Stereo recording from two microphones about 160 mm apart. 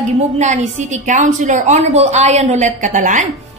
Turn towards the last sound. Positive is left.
turn(degrees=-50)  # may be behind; listen again after turning